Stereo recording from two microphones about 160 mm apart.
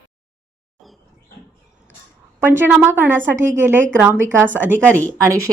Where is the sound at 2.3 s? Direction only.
15° right (ahead or behind).